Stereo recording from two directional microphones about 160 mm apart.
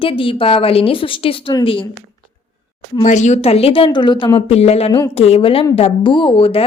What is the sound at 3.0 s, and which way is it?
A woman's voice, 50° left (ahead or behind).